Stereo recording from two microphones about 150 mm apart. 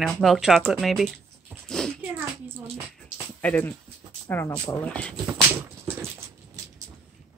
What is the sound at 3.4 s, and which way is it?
Speech, 10° left (ahead or behind).